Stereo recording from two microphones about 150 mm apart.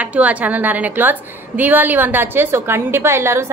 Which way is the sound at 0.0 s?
10° right (ahead or behind).